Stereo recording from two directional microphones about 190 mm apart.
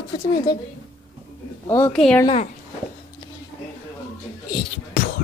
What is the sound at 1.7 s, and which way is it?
Speech, 10° left (ahead or behind).